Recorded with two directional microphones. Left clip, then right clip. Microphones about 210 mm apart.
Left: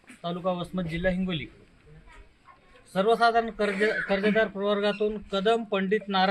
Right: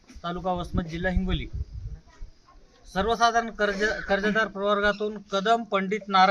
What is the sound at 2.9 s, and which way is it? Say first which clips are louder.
A man's voice: left 1 dB; 5° right (ahead or behind).